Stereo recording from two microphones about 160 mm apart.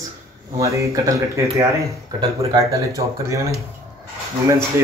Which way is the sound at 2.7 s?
20° right (ahead or behind).